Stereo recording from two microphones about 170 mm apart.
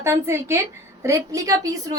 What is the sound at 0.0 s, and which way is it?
A woman's voice, 15° right (ahead or behind).